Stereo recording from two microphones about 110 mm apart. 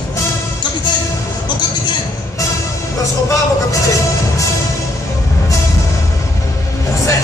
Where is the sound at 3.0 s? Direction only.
30° left (ahead or behind).